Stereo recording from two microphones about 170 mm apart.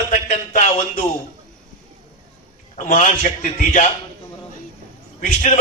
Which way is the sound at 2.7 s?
50° left (ahead or behind).